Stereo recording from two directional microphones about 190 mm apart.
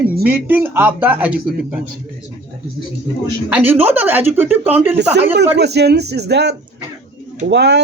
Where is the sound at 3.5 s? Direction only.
10° right (ahead or behind).